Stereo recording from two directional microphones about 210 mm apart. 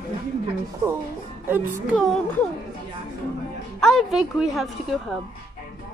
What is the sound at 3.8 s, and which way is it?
A woman's voice, centre (ahead or behind).